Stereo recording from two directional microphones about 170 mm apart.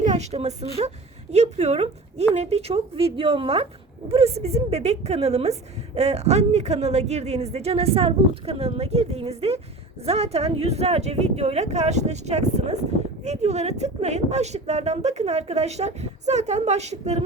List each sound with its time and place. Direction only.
0.0 s a woman's voice: 40° right (ahead or behind)